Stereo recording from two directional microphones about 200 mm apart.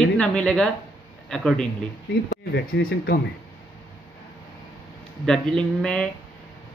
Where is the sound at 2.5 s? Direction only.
50° left (ahead or behind).